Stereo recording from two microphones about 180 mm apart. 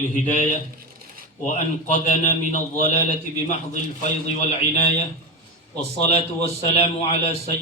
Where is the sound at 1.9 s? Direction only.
40° left (ahead or behind).